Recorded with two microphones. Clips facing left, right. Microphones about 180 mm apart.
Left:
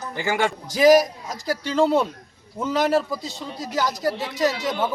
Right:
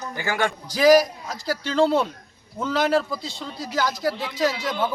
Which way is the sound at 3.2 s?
45° left (ahead or behind).